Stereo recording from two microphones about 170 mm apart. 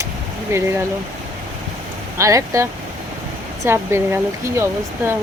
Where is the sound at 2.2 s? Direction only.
20° right (ahead or behind).